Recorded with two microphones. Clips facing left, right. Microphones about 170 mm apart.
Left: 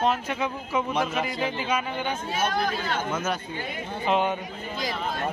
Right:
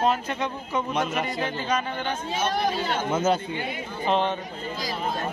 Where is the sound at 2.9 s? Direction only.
25° right (ahead or behind).